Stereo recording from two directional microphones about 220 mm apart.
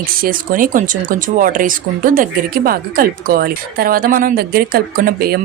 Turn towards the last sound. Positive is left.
turn(degrees=-40)  # may be behind; listen again after turning